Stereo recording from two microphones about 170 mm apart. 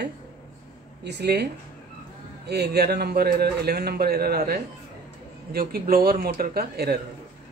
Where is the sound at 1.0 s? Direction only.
80° right; by 7.0 s 65° right (ahead or behind).